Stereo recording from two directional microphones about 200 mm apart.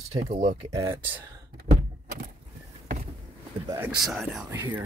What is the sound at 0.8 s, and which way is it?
Speech, 15° right (ahead or behind).